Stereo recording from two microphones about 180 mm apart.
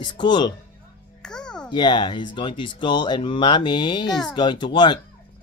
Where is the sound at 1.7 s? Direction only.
25° left (ahead or behind).